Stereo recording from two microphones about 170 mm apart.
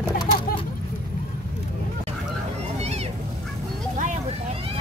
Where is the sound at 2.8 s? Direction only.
40° right (ahead or behind).